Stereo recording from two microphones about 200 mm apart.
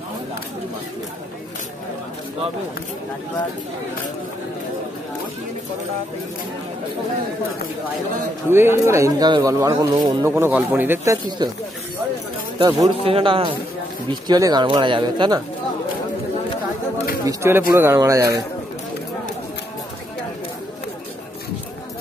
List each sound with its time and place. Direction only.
8.5 s speech: 10° right (ahead or behind)
11.2 s speech: 20° right (ahead or behind)
12.5 s speech: 20° right (ahead or behind)
17.2 s speech: 15° right (ahead or behind)